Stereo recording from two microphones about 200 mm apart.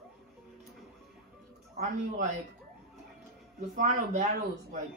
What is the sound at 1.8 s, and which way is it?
Speech, 40° right (ahead or behind).